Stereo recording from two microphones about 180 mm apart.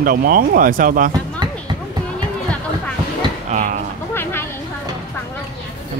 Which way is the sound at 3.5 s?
45° right (ahead or behind).